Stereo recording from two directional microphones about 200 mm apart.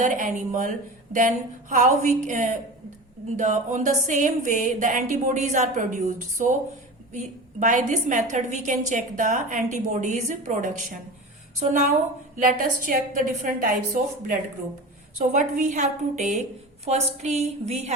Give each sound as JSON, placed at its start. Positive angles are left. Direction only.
{"t": 0.0, "sound": "a woman's voice", "side_deg": -40}
{"t": 1.7, "sound": "a woman's voice", "side_deg": -40}
{"t": 12.4, "sound": "a woman's voice", "side_deg": -40}